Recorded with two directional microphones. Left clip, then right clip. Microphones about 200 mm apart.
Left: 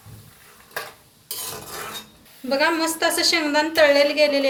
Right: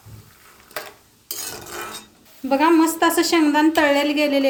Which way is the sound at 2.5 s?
40° right (ahead or behind).